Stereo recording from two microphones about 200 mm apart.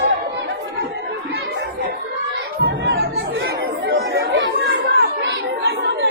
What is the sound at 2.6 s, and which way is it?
Chatter, 60° right (ahead or behind).